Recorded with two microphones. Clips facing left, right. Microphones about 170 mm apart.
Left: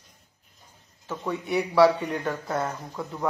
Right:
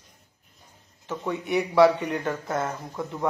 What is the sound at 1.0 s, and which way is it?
Speech, 20° right (ahead or behind).